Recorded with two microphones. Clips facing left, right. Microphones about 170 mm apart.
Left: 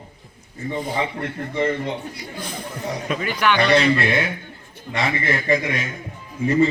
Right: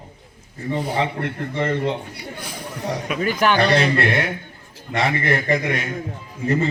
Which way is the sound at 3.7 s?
60° right (ahead or behind).